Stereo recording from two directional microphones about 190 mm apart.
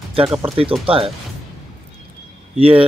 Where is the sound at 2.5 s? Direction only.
30° right (ahead or behind).